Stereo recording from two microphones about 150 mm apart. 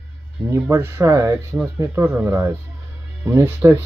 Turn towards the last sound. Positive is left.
turn(degrees=-15)  # may be behind; listen again after turning